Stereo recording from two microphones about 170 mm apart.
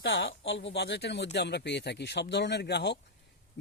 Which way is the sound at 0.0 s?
90° left.